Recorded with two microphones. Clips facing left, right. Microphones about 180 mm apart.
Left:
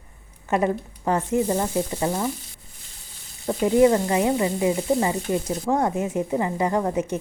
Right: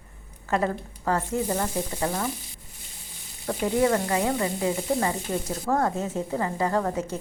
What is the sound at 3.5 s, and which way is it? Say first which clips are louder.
Sizzle: left 5 dB; 20° left (ahead or behind).